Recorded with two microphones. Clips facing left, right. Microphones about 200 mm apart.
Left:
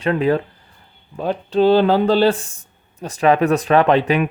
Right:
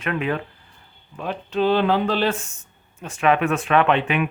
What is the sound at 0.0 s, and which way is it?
Speech, 35° left (ahead or behind).